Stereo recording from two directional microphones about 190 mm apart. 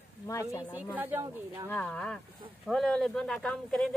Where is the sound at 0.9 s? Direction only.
10° right (ahead or behind).